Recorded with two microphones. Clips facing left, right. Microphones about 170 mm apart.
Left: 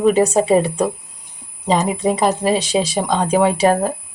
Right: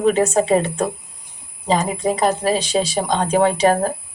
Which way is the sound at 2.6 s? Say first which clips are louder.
Left 1 dB; 30° right (ahead or behind).